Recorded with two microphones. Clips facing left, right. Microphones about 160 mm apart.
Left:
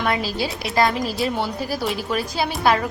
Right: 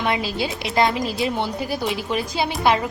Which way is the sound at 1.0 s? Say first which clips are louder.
Even; centre (ahead or behind).